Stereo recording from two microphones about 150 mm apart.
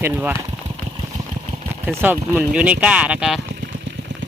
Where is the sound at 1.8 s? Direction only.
10° right (ahead or behind).